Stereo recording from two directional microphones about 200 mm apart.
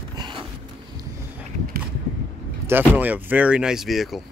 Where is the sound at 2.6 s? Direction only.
10° right (ahead or behind).